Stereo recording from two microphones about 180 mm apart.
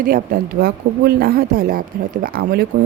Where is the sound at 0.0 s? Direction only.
50° right (ahead or behind).